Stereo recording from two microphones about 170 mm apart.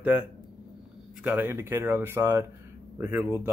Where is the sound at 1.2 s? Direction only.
10° right (ahead or behind).